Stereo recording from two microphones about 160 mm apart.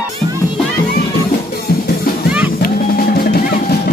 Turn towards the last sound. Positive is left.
turn(degrees=70)  # may be behind; listen again after turning